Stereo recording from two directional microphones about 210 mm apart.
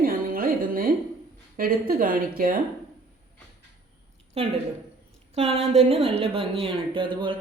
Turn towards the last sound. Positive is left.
turn(degrees=-25)  # may be behind; listen again after turning